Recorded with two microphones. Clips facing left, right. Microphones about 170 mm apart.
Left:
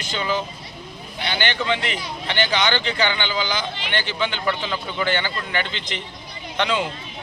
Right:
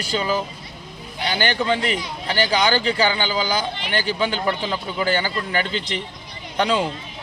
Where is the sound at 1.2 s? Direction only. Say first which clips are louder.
Right 2 dB; 40° right (ahead or behind).